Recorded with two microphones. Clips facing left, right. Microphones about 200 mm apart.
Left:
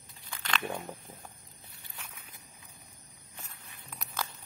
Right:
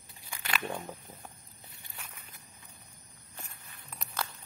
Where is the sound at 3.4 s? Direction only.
Centre (ahead or behind).